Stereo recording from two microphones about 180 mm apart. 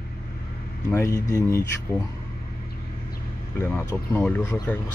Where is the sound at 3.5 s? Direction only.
15° left (ahead or behind).